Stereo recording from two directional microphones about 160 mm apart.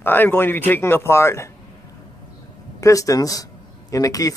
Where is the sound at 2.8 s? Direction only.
20° left (ahead or behind).